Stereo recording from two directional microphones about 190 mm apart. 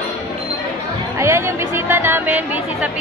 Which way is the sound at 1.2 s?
15° right (ahead or behind).